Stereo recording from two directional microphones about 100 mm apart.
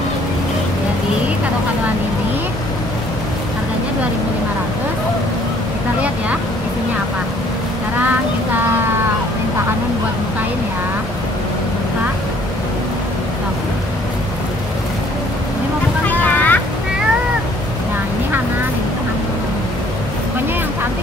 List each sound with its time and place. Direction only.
16.1 s boat: 15° left (ahead or behind)